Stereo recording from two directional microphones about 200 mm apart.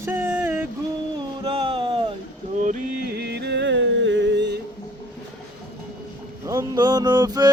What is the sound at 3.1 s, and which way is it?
Music, 55° right (ahead or behind).